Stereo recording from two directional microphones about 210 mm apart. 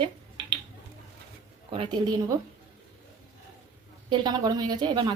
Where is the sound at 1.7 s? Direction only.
25° right (ahead or behind).